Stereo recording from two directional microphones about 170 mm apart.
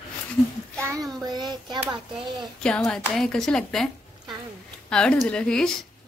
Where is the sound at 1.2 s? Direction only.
25° right (ahead or behind).